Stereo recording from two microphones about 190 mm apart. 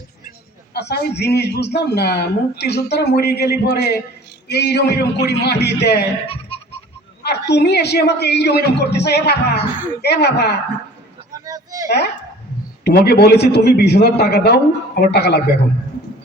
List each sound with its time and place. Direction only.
0.7 s a man's voice: 60° left (ahead or behind)
7.2 s a man's voice: 60° left (ahead or behind)
11.4 s a sound: 20° right (ahead or behind)
11.9 s a man's voice: 60° left (ahead or behind)